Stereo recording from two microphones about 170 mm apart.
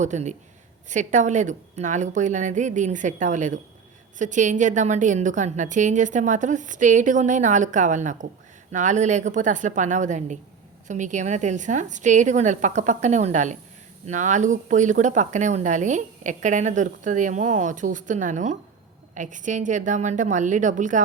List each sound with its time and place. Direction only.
0.0 s speech: 45° right (ahead or behind)